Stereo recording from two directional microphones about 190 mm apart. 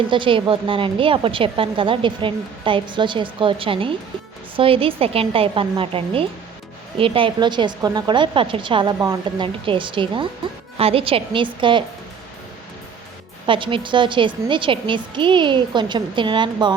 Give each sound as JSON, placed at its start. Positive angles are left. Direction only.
{"t": 0.1, "sound": "a woman's voice", "side_deg": -25}
{"t": 13.5, "sound": "a woman's voice", "side_deg": -25}